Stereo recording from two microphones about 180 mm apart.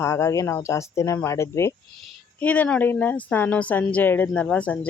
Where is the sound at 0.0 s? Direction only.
15° left (ahead or behind).